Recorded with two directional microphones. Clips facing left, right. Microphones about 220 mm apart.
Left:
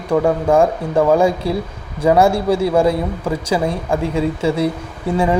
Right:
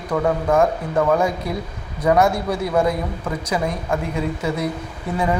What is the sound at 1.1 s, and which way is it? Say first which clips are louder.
Speech: left 7 dB; 30° left (ahead or behind).